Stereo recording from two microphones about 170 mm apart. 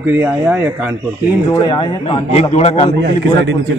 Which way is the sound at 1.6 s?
30° left (ahead or behind).